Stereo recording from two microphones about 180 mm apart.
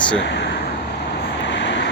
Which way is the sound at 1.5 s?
80° left.